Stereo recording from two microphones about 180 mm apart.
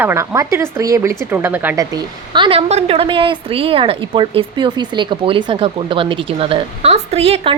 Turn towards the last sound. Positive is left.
turn(degrees=-35)  # may be behind; listen again after turning